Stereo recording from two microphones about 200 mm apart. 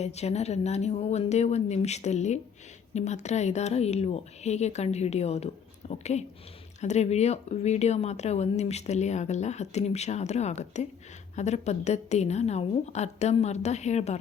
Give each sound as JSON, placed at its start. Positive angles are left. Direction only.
{"t": 0.0, "sound": "speech", "side_deg": 35}